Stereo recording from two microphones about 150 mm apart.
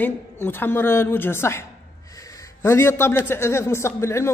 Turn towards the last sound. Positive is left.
turn(degrees=20)  # may be behind; listen again after turning